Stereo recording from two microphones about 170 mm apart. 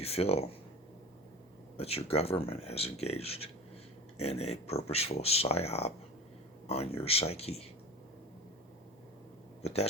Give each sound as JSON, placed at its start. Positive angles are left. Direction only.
{"t": 0.0, "sound": "speech", "side_deg": 35}
{"t": 1.7, "sound": "speech", "side_deg": 35}